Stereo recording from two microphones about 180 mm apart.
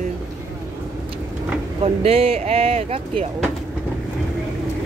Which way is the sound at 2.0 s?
35° right (ahead or behind).